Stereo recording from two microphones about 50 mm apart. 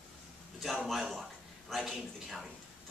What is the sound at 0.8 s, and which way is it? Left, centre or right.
Speech, centre.